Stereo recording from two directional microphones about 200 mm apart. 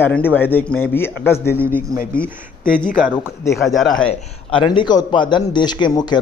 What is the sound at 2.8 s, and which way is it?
Speech, 5° right (ahead or behind).